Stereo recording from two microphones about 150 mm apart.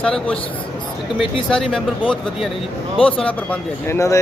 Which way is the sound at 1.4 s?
5° left (ahead or behind).